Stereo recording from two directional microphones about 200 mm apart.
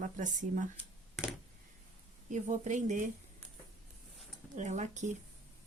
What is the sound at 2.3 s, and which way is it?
Speech, 35° right (ahead or behind).